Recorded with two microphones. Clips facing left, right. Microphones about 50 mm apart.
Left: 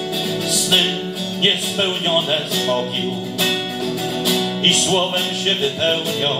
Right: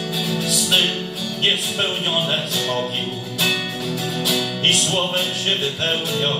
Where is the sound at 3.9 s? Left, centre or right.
Centre.